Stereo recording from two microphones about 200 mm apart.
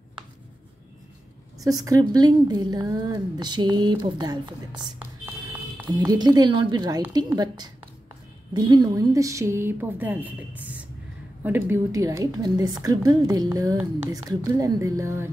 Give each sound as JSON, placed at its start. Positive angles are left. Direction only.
{"t": 1.6, "sound": "a woman's voice", "side_deg": -15}
{"t": 5.9, "sound": "a woman's voice", "side_deg": -20}